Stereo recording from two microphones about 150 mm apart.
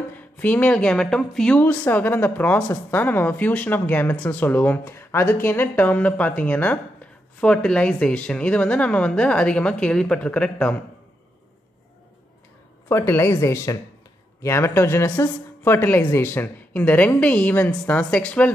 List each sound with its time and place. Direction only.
0.1 s speech: 10° left (ahead or behind)
12.9 s speech: 15° left (ahead or behind)